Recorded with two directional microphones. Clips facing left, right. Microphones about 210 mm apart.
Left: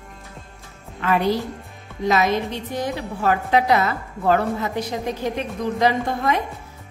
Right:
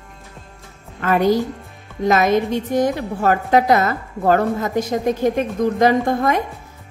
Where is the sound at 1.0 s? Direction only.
45° right (ahead or behind).